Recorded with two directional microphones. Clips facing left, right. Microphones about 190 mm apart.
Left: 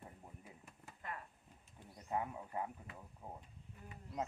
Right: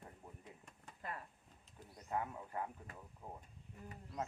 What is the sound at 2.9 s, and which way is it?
Speech, 45° right (ahead or behind).